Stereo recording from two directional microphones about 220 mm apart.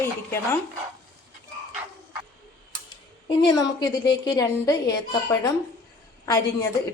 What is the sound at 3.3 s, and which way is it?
A woman's voice, 20° left (ahead or behind).